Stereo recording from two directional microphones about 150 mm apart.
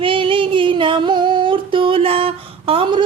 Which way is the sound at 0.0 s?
35° right (ahead or behind).